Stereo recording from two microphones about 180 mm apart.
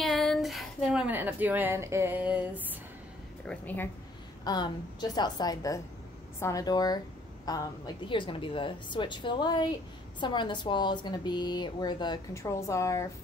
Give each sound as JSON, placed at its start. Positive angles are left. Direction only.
{"t": 0.0, "sound": "a woman's voice", "side_deg": 5}
{"t": 3.4, "sound": "a woman's voice", "side_deg": 10}
{"t": 4.5, "sound": "speech", "side_deg": 20}